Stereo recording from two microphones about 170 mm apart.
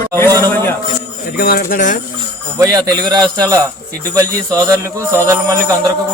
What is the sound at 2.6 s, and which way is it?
Speech, 20° right (ahead or behind).